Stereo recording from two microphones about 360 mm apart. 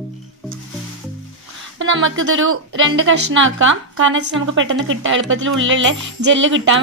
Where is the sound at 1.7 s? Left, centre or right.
Right.